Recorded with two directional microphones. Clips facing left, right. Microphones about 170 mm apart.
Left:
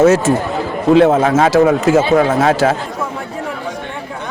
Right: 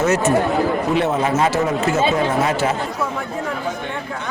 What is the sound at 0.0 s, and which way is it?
Speech, 90° left.